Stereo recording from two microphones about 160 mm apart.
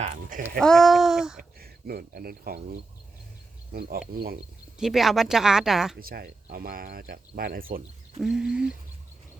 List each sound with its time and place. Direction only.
0.0 s a sound: 55° right (ahead or behind)
0.6 s speech: centre (ahead or behind)
1.5 s speech: 70° right (ahead or behind)
4.8 s speech: centre (ahead or behind)
6.0 s speech: 70° right (ahead or behind)
8.2 s speech: 5° right (ahead or behind)